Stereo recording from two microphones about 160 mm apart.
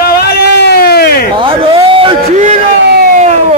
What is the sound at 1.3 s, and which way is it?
Speech, 35° right (ahead or behind).